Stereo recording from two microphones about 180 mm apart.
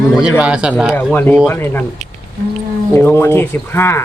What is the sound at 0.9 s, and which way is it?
Speech, 10° left (ahead or behind).